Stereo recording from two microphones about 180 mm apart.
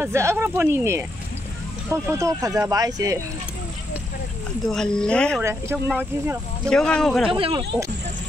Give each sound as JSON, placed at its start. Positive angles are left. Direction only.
{"t": 0.0, "sound": "speech", "side_deg": -15}
{"t": 4.6, "sound": "speech", "side_deg": 5}
{"t": 5.4, "sound": "speech", "side_deg": -15}
{"t": 6.7, "sound": "speech", "side_deg": 5}
{"t": 7.2, "sound": "speech", "side_deg": -30}